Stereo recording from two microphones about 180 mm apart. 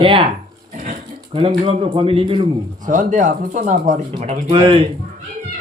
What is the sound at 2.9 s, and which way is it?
Speech, 45° right (ahead or behind).